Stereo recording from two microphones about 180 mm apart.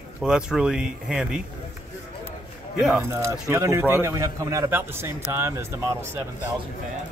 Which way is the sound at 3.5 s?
15° right (ahead or behind).